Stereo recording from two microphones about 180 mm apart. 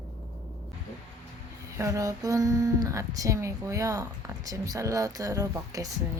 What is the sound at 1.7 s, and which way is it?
Speech, 20° right (ahead or behind).